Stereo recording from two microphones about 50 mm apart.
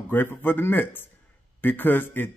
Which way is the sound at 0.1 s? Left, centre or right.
Left.